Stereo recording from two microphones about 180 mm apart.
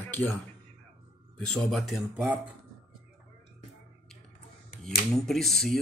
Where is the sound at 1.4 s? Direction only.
5° left (ahead or behind).